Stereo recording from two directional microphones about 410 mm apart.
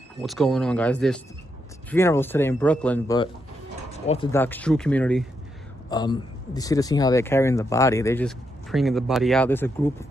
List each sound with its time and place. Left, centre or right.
0.2 s a man's voice: centre